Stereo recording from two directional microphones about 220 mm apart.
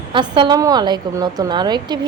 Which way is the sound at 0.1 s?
20° right (ahead or behind).